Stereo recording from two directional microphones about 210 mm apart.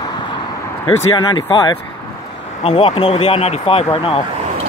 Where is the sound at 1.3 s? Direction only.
20° left (ahead or behind).